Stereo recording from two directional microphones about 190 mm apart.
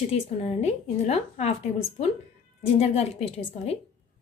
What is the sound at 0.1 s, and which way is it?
A woman's voice, 35° left (ahead or behind).